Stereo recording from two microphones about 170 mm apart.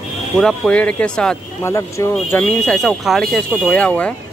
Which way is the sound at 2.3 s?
5° left (ahead or behind).